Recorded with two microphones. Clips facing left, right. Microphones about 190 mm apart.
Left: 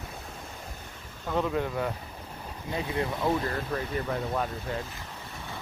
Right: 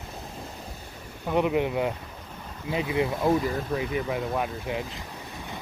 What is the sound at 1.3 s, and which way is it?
Speech, 15° right (ahead or behind).